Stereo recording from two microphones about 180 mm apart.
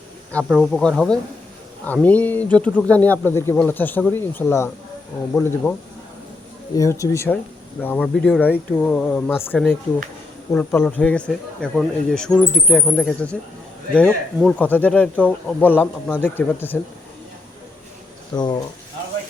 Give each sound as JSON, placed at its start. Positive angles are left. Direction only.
{"t": 0.4, "sound": "speech", "side_deg": 0}
{"t": 6.7, "sound": "speech", "side_deg": 15}
{"t": 18.3, "sound": "speech", "side_deg": 20}